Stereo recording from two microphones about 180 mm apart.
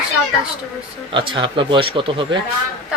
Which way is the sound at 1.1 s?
30° right (ahead or behind).